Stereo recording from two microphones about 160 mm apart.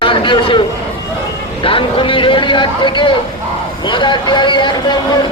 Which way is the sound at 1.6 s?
35° left (ahead or behind).